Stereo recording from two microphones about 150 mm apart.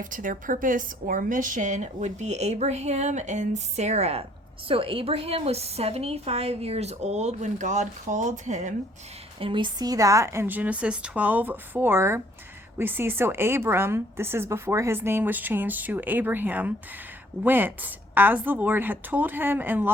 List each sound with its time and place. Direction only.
0.0 s speech: 60° right (ahead or behind)
9.4 s a woman's voice: 35° right (ahead or behind); by 19.9 s 15° right (ahead or behind)